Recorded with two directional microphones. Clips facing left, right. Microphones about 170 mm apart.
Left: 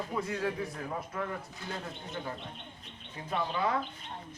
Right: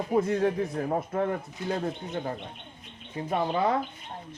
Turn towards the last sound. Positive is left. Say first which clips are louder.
# right 6 dB
turn(degrees=-35)  # may be behind; listen again after turning